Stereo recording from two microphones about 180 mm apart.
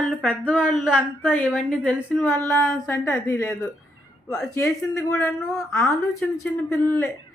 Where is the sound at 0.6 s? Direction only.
5° right (ahead or behind).